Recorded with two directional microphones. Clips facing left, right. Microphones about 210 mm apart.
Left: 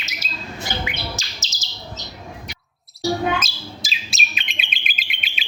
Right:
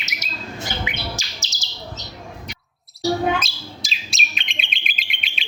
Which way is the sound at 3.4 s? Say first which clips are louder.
Even; centre (ahead or behind).